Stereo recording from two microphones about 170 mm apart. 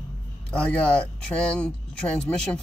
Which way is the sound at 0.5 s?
5° left (ahead or behind).